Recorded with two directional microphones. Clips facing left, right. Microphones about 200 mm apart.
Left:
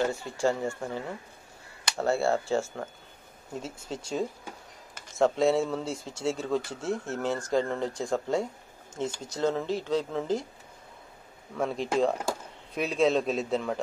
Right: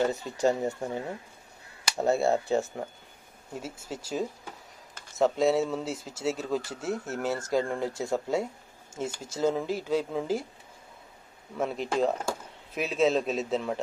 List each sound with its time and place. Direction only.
0.0 s speech: 20° right (ahead or behind)
3.9 s speech: 5° right (ahead or behind)
11.5 s speech: 5° right (ahead or behind)